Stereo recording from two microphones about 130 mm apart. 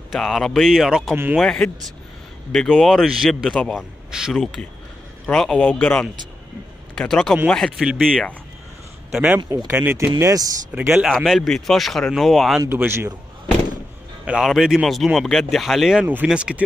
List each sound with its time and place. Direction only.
0.1 s speech: centre (ahead or behind)
7.0 s speech: 5° left (ahead or behind)
9.1 s speech: 5° right (ahead or behind)
9.4 s speech: 35° right (ahead or behind)
9.7 s speech: 15° right (ahead or behind)
10.7 s speech: 10° right (ahead or behind)
12.5 s speech: 15° right (ahead or behind)
14.2 s speech: 5° right (ahead or behind)